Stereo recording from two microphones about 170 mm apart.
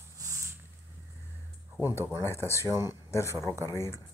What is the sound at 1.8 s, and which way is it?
Speech, 15° right (ahead or behind).